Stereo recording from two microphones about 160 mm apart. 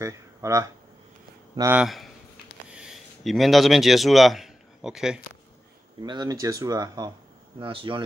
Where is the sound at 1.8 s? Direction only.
Centre (ahead or behind).